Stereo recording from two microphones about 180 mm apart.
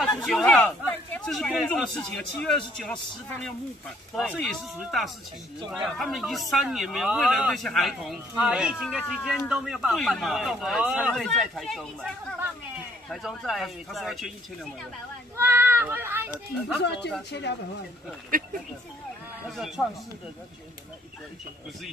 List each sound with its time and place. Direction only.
0.0 s speech: centre (ahead or behind)
15.3 s speech: 10° right (ahead or behind)
16.8 s speech: 70° left (ahead or behind)
18.3 s speech: 50° right (ahead or behind)
19.8 s speech: centre (ahead or behind)